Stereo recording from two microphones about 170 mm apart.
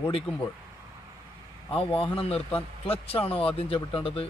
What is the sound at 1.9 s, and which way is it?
Speech, 35° left (ahead or behind).